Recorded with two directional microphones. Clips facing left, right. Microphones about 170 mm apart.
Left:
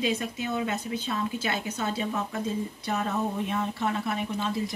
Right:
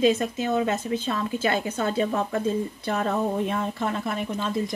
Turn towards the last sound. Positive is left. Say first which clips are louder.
# right 2 dB
turn(degrees=-50)  # may be behind; listen again after turning